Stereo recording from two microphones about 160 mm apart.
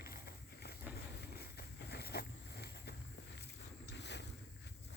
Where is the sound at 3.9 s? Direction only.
90° left.